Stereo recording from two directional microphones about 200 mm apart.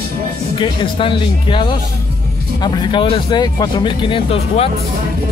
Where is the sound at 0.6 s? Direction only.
25° left (ahead or behind).